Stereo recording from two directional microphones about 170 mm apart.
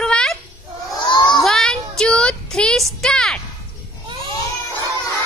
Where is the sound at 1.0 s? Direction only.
25° left (ahead or behind).